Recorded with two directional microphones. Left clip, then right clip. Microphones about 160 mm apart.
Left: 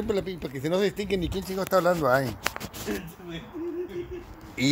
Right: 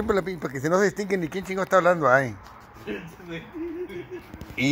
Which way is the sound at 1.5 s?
5° left (ahead or behind).